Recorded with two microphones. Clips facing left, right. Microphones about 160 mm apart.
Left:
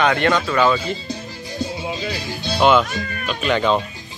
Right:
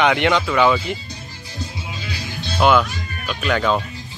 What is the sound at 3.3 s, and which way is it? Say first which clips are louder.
Speech: left 1 dB; centre (ahead or behind).